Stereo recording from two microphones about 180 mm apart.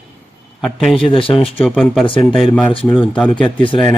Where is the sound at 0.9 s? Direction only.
30° left (ahead or behind).